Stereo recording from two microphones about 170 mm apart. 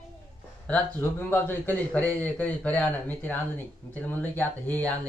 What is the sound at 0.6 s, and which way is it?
A man's voice, 10° left (ahead or behind).